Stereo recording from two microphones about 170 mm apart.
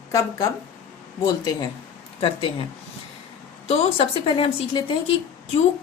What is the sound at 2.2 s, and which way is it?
Speech, 35° left (ahead or behind).